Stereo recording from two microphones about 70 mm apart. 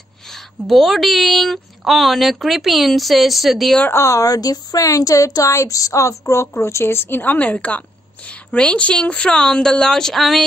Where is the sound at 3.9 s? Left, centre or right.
Left.